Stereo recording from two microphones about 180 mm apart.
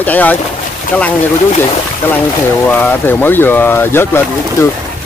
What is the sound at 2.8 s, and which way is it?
Speech, 10° left (ahead or behind).